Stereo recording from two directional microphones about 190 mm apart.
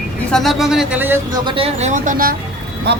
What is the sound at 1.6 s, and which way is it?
Speech, 40° right (ahead or behind).